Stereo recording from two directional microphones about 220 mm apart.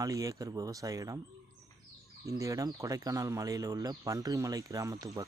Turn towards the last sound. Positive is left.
turn(degrees=-15)  # may be behind; listen again after turning